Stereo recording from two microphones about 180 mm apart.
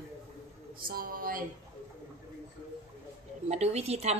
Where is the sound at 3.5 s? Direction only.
35° right (ahead or behind).